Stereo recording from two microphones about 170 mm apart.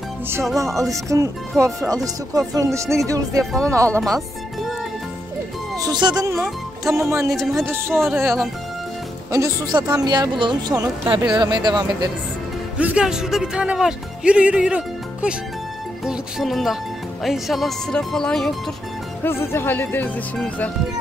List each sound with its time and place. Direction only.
1.0 s speech: 20° right (ahead or behind)
3.9 s speech: centre (ahead or behind)
5.8 s speech: 25° right (ahead or behind)
6.8 s speech: centre (ahead or behind)
7.1 s speech: 15° right (ahead or behind)
7.3 s speech: centre (ahead or behind)
9.3 s speech: 20° right (ahead or behind)
12.7 s speech: 5° right (ahead or behind)
19.2 s speech: 15° left (ahead or behind)